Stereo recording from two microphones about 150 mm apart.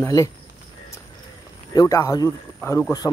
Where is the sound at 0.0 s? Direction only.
20° left (ahead or behind).